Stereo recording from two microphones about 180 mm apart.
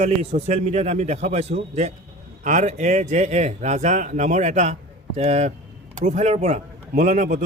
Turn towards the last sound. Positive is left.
turn(degrees=-40)  # may be behind; listen again after turning